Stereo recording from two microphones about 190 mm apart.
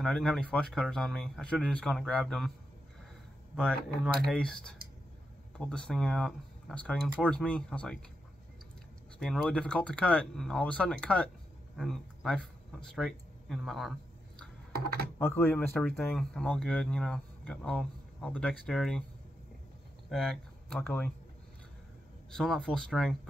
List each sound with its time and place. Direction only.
0.0 s speech: centre (ahead or behind)
3.5 s speech: 5° left (ahead or behind)
9.2 s speech: 5° left (ahead or behind)
14.7 s speech: 55° right (ahead or behind)
15.1 s speech: 10° left (ahead or behind)
20.1 s speech: centre (ahead or behind)
22.3 s speech: 5° left (ahead or behind)